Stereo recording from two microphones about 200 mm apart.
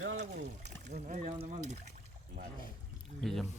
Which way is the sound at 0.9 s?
35° right (ahead or behind).